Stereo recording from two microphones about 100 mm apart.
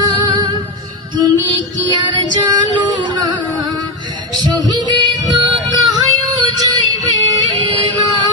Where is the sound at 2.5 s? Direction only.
40° right (ahead or behind).